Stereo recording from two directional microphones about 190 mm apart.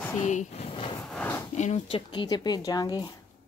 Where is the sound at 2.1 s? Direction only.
25° left (ahead or behind).